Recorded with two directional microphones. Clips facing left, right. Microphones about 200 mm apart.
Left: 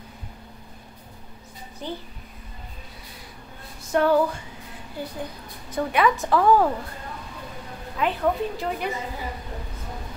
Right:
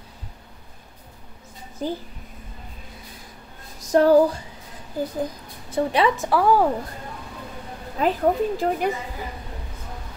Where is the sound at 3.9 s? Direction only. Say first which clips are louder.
Right 5 dB; 35° right (ahead or behind).